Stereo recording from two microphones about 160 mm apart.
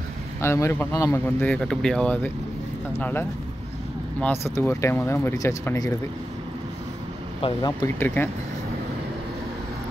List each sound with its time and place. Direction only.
0.4 s speech: 15° left (ahead or behind)
7.4 s speech: 25° left (ahead or behind)